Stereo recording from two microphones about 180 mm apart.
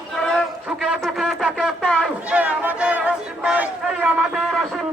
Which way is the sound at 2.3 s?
10° right (ahead or behind).